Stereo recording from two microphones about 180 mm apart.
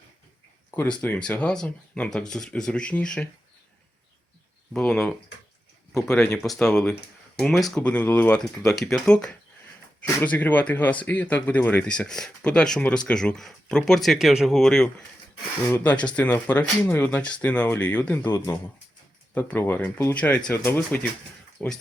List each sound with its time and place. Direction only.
0.7 s speech: 10° left (ahead or behind)
4.7 s speech: 5° left (ahead or behind)